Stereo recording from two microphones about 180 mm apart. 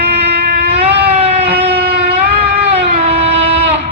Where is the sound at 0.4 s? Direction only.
45° right (ahead or behind).